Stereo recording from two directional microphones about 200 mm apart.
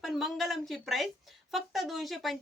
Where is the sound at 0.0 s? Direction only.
Centre (ahead or behind).